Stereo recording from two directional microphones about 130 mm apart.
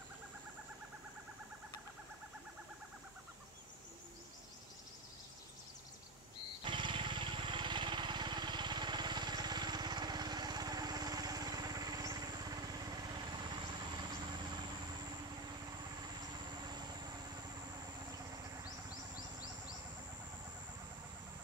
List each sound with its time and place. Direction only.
6.6 s vehicle: 40° right (ahead or behind)
16.6 s vehicle: 30° right (ahead or behind)